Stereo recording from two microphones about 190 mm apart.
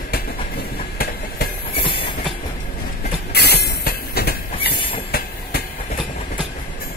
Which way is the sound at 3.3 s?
60° left (ahead or behind).